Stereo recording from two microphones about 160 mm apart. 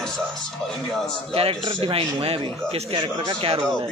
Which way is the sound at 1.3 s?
35° right (ahead or behind).